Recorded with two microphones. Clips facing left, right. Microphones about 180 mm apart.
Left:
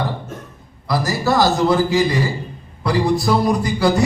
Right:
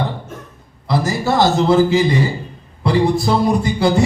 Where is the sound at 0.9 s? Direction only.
25° right (ahead or behind).